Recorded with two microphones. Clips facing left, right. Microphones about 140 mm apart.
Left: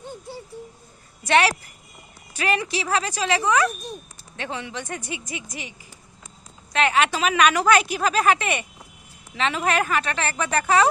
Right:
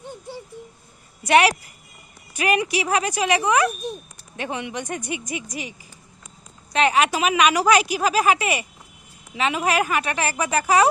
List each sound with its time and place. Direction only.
1.3 s a woman's voice: 20° right (ahead or behind)
6.7 s a woman's voice: 15° right (ahead or behind)